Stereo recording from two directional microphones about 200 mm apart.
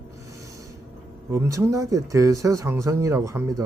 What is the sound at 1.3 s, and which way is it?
Speech, 15° right (ahead or behind).